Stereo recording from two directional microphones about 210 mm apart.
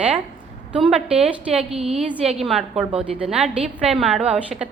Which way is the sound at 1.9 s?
5° right (ahead or behind).